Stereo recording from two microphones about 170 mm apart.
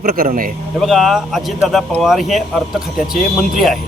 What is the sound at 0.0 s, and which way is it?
Speech, 60° right (ahead or behind).